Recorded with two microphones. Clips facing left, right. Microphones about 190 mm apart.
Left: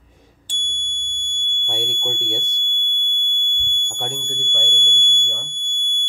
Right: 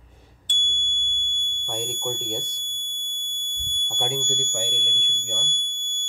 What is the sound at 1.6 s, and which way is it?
Fire alarm, 5° left (ahead or behind).